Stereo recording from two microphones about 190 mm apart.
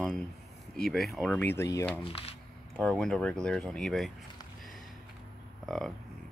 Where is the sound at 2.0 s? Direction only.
30° left (ahead or behind).